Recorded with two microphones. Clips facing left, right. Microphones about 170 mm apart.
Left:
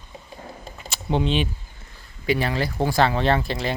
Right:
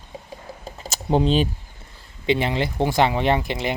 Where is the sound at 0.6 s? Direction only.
40° right (ahead or behind).